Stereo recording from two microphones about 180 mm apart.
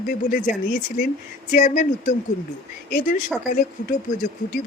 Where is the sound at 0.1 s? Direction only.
50° left (ahead or behind).